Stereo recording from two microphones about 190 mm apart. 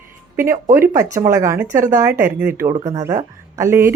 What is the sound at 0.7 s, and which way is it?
Speech, 10° right (ahead or behind).